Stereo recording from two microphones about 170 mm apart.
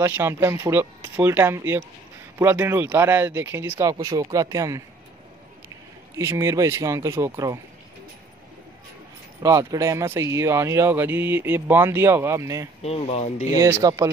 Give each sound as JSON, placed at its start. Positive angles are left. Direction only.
{"t": 0.0, "sound": "speech", "side_deg": -15}
{"t": 3.7, "sound": "speech", "side_deg": -25}
{"t": 6.1, "sound": "speech", "side_deg": -15}
{"t": 9.4, "sound": "speech", "side_deg": -20}
{"t": 12.8, "sound": "speech", "side_deg": 40}
{"t": 13.6, "sound": "speech", "side_deg": -20}